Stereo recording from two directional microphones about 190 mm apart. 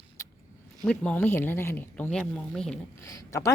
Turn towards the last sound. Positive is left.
turn(degrees=15)  # may be behind; listen again after turning